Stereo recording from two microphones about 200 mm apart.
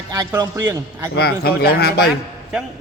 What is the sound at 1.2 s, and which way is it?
Speech, 50° left (ahead or behind).